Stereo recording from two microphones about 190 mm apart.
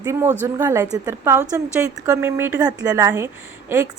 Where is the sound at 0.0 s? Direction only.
15° right (ahead or behind).